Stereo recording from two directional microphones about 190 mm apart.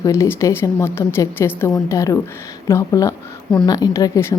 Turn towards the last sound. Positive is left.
turn(degrees=15)  # may be behind; listen again after turning